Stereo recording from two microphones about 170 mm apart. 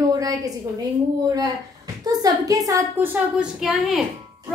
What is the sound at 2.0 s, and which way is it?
A woman's voice, 20° right (ahead or behind).